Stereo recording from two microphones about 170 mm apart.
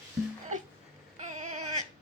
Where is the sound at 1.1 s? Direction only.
45° right (ahead or behind).